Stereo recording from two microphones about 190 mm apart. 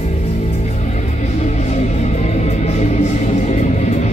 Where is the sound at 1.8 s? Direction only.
35° left (ahead or behind).